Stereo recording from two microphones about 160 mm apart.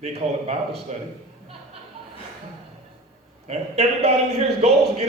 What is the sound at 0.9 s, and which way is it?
Speech, 45° right (ahead or behind).